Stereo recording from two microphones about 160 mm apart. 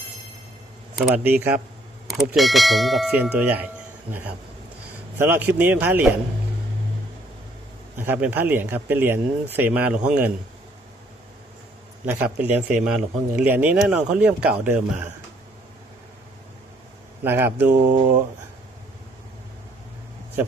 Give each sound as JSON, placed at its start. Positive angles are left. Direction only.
{"t": 2.0, "sound": "speech", "side_deg": 0}
{"t": 8.0, "sound": "speech", "side_deg": -15}
{"t": 12.1, "sound": "speech", "side_deg": -10}
{"t": 17.2, "sound": "speech", "side_deg": -15}
{"t": 17.9, "sound": "speech", "side_deg": -50}